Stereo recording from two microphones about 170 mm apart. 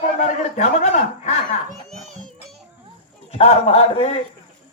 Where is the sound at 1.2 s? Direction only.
45° left (ahead or behind).